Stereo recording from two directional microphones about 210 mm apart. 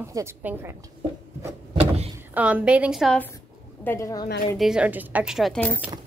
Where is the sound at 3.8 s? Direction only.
10° left (ahead or behind).